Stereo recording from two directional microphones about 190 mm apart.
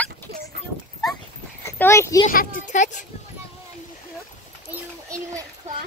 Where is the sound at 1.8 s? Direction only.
15° left (ahead or behind).